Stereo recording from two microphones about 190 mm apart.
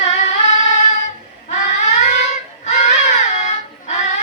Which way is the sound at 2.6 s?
40° left (ahead or behind).